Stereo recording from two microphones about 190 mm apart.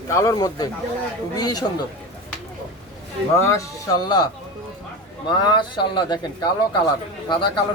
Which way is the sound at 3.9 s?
20° left (ahead or behind).